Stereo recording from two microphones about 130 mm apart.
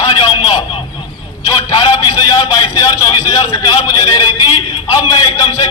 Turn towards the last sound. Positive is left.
turn(degrees=30)  # may be behind; listen again after turning